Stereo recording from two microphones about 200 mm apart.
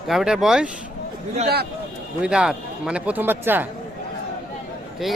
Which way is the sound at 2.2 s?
5° right (ahead or behind).